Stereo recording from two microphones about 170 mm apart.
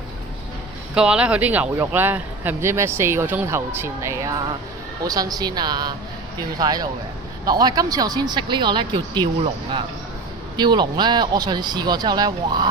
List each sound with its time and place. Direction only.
0.9 s speech: 5° right (ahead or behind); by 12.6 s 25° right (ahead or behind)